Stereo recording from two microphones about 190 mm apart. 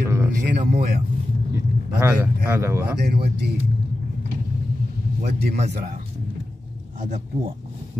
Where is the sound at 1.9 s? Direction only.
10° right (ahead or behind).